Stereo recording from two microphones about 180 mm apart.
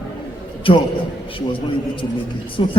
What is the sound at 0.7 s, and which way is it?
Speech, 30° left (ahead or behind).